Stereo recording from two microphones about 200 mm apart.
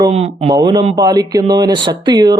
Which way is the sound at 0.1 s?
30° right (ahead or behind).